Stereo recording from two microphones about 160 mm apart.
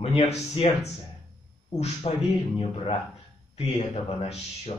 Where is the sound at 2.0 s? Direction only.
35° left (ahead or behind).